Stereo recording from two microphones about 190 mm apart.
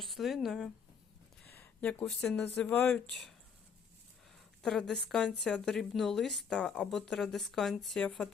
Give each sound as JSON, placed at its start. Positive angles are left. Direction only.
{"t": 0.0, "sound": "speech", "side_deg": 0}
{"t": 4.6, "sound": "speech", "side_deg": 5}